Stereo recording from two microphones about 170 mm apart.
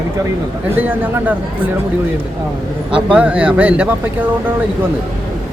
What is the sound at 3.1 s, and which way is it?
Speech, 5° right (ahead or behind).